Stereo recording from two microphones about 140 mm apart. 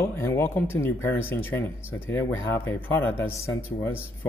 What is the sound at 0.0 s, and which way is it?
Speech, 20° left (ahead or behind).